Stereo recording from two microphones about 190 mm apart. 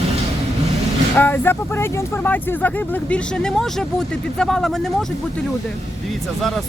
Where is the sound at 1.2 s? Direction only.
10° left (ahead or behind).